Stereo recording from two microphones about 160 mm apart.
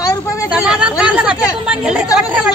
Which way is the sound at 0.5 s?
5° right (ahead or behind).